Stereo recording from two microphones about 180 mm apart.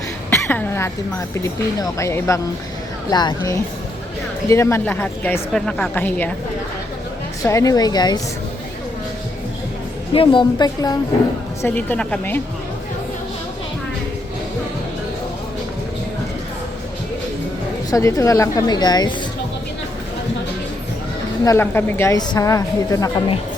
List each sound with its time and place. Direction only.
0.3 s a woman's voice: 10° left (ahead or behind)
7.4 s a woman's voice: 15° left (ahead or behind)
10.2 s a woman's voice: 25° left (ahead or behind)
11.6 s a woman's voice: 10° left (ahead or behind)
17.9 s a woman's voice: 15° left (ahead or behind)
21.4 s a woman's voice: 15° left (ahead or behind)